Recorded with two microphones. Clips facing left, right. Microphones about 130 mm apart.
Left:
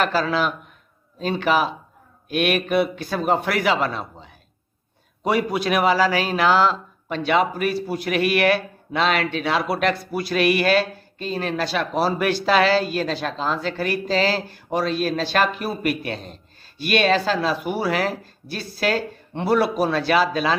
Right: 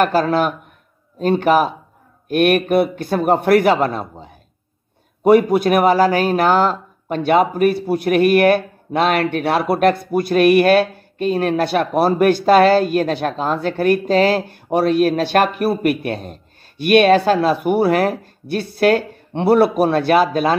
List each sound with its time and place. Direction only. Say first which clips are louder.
0.0 s a man's voice: right 5 dB; 55° right (ahead or behind)